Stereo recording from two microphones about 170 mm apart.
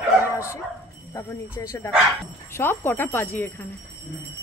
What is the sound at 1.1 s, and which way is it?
Speech, 15° left (ahead or behind).